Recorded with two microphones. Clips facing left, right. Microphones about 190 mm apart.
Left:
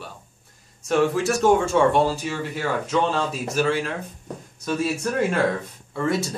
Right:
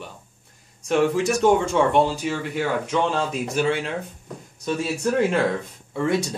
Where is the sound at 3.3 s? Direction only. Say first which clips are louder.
Even; 15° right (ahead or behind).